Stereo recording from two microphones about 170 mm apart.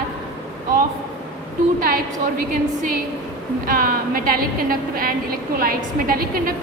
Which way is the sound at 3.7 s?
55° right (ahead or behind).